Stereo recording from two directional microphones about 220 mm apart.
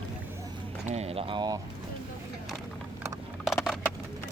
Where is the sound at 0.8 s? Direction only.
30° right (ahead or behind).